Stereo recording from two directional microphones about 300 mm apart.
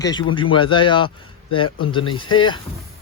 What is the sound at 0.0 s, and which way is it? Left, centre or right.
Speech, centre.